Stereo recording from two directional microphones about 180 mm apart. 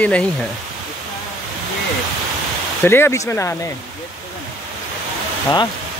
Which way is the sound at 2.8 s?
10° left (ahead or behind).